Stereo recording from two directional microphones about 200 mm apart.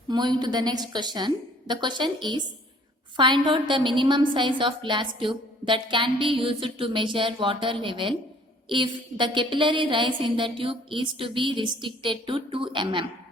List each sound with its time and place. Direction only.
0.1 s a woman's voice: 20° right (ahead or behind)